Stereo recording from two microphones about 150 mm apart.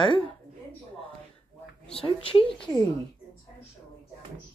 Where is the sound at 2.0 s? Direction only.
35° left (ahead or behind).